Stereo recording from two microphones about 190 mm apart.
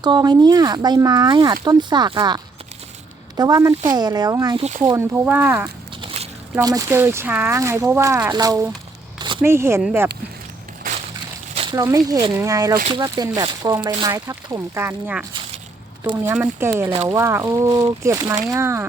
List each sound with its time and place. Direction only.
0.0 s speech: 20° right (ahead or behind)
9.1 s a sound: 25° right (ahead or behind)
9.4 s speech: 15° right (ahead or behind)
11.5 s speech: 25° right (ahead or behind)
15.3 s a sound: 25° right (ahead or behind)
16.2 s speech: 10° right (ahead or behind)
16.9 s speech: 30° right (ahead or behind)
17.2 s speech: 15° right (ahead or behind)